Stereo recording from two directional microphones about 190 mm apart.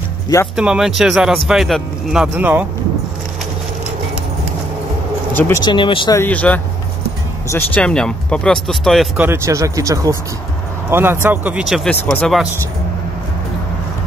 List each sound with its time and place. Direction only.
0.6 s speech: 5° right (ahead or behind)
5.3 s speech: 10° left (ahead or behind)
5.6 s speech: 25° left (ahead or behind)
6.1 s speech: 10° left (ahead or behind)
11.9 s speech: 5° left (ahead or behind)